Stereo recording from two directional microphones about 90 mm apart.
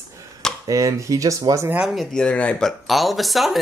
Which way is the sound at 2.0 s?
10° left (ahead or behind).